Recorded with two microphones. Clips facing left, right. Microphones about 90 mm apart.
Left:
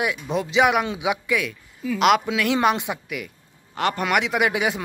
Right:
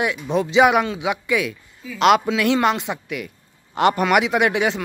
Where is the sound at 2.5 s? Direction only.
15° left (ahead or behind).